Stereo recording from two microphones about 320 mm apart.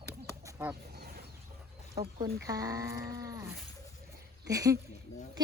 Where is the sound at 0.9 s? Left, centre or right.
Right.